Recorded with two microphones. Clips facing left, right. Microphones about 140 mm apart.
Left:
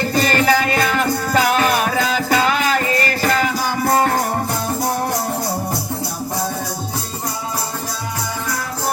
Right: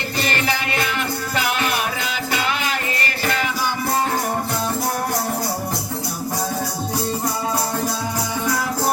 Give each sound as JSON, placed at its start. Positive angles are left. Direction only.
{"t": 0.2, "sound": "music", "side_deg": 40}
{"t": 3.8, "sound": "music", "side_deg": 60}